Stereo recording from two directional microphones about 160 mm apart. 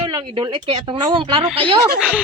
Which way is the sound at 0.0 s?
25° right (ahead or behind).